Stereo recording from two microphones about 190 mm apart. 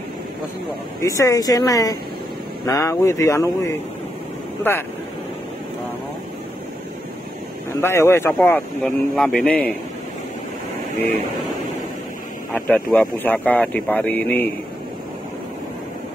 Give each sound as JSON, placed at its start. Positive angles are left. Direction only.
{"t": 1.0, "sound": "speech", "side_deg": 15}
{"t": 7.8, "sound": "speech", "side_deg": 15}
{"t": 12.5, "sound": "speech", "side_deg": 5}